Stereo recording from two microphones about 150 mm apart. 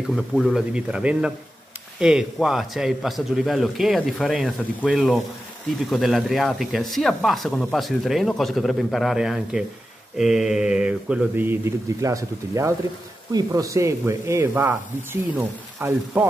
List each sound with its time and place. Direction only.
0.1 s a man's voice: centre (ahead or behind)